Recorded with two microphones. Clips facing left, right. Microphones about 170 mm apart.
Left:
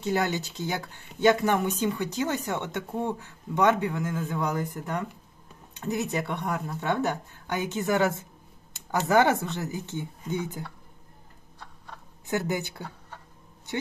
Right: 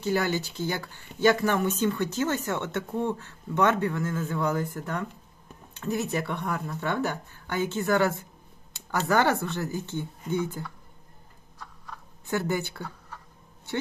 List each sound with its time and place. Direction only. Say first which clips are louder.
0.0 s speech: right 1 dB; 20° left (ahead or behind)
11.5 s a sound: right 2 dB; 30° left (ahead or behind)
12.3 s speech: right 1 dB; 20° left (ahead or behind)